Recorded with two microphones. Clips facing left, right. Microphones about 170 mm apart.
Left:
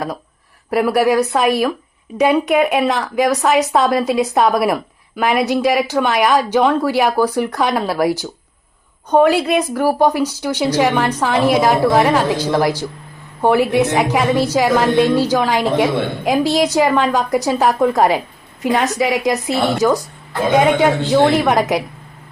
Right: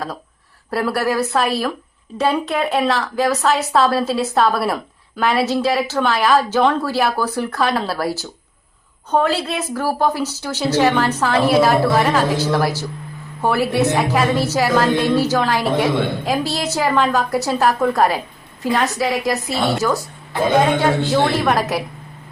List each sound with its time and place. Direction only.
0.7 s a woman's voice: 15° left (ahead or behind)